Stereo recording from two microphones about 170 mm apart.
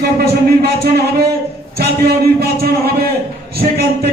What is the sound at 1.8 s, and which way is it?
A man's voice, 70° right (ahead or behind).